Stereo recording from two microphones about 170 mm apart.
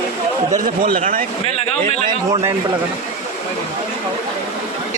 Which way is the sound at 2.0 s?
20° right (ahead or behind).